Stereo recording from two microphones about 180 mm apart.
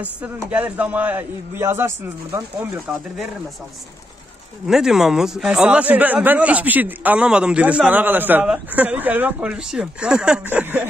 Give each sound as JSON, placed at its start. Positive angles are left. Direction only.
{"t": 0.0, "sound": "a man's voice", "side_deg": -10}
{"t": 4.6, "sound": "a man's voice", "side_deg": -5}